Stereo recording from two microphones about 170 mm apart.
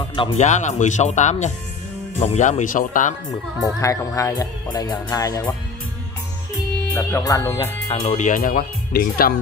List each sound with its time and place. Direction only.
0.0 s music: 30° left (ahead or behind)
0.4 s speech: 45° left (ahead or behind)
3.8 s speech: 20° left (ahead or behind)
6.9 s speech: 15° left (ahead or behind)
7.6 s speech: 35° left (ahead or behind); by 9.3 s 60° left (ahead or behind)